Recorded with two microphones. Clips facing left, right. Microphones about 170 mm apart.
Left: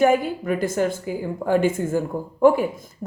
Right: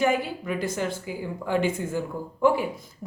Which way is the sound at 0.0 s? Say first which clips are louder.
Left 6 dB; 50° left (ahead or behind).